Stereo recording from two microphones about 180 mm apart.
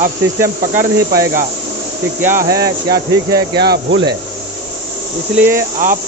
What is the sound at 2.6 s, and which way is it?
Speech, 60° right (ahead or behind).